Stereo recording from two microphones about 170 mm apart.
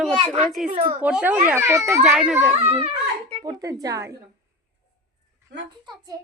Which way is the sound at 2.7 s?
40° right (ahead or behind).